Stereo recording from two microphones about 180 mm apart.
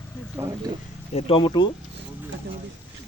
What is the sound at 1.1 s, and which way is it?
Speech, 30° left (ahead or behind).